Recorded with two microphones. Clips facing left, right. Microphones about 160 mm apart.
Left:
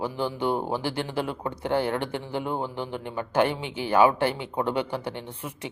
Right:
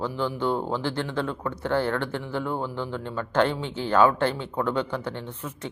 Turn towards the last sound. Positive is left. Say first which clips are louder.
# right 1 dB
turn(degrees=10)  # may be behind; listen again after turning